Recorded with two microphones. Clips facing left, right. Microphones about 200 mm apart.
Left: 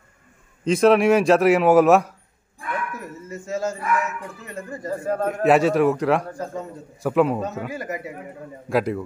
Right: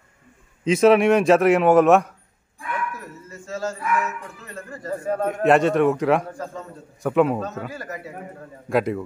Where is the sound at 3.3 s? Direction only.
20° left (ahead or behind).